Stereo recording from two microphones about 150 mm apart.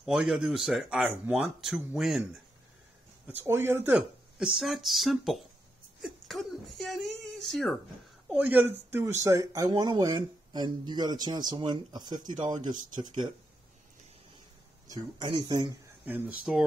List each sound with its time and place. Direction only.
0.0 s speech: centre (ahead or behind)
3.3 s speech: 15° right (ahead or behind); by 7.7 s centre (ahead or behind)
8.3 s speech: 10° right (ahead or behind); by 13.3 s 30° right (ahead or behind)
14.9 s speech: 30° right (ahead or behind)
16.5 s speech: 5° right (ahead or behind)